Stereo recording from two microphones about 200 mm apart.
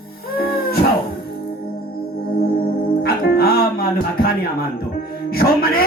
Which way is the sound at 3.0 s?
50° left (ahead or behind).